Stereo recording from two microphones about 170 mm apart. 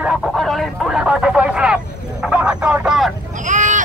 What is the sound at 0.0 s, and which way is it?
Vehicle, 5° right (ahead or behind).